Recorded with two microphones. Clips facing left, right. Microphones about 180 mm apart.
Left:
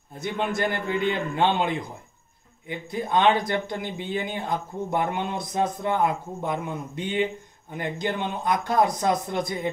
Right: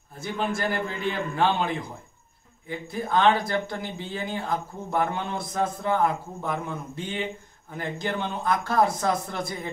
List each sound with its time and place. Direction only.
0.2 s speech: 20° left (ahead or behind)
2.9 s speech: 20° left (ahead or behind)